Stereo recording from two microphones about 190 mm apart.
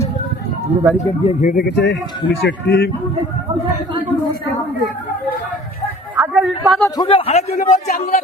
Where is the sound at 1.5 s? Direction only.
50° left (ahead or behind).